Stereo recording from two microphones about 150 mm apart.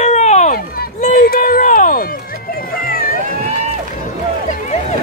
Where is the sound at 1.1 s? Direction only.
75° left (ahead or behind).